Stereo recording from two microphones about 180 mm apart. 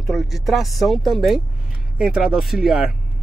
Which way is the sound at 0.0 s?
Centre (ahead or behind).